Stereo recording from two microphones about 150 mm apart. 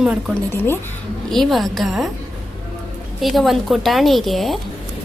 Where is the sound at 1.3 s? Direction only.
Centre (ahead or behind).